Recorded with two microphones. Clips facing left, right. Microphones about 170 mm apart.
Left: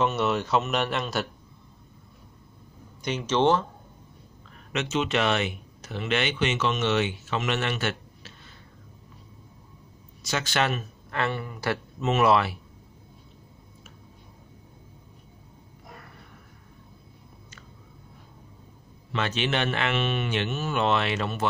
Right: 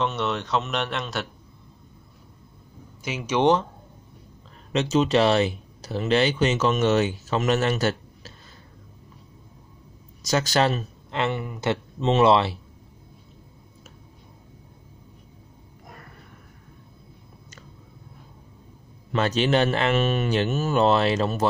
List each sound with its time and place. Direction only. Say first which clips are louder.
0.0 s speech: left 1 dB; 5° left (ahead or behind)
3.0 s speech: right 1 dB; 5° right (ahead or behind)
4.7 s speech: right 6 dB; 35° right (ahead or behind)
10.2 s speech: right 5 dB; 40° right (ahead or behind)
11.1 s speech: right 3 dB; 20° right (ahead or behind)
19.1 s speech: right 6 dB; 40° right (ahead or behind)